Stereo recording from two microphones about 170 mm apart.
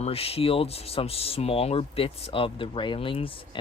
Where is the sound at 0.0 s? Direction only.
35° left (ahead or behind).